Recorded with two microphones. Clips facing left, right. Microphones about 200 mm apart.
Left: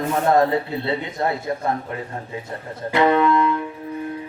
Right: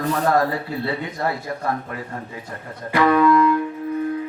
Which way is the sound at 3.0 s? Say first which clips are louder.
Right 1 dB; 25° left (ahead or behind).